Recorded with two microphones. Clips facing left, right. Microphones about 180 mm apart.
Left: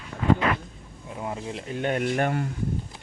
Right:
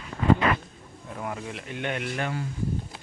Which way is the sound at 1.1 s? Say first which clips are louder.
Left 2 dB; 25° left (ahead or behind).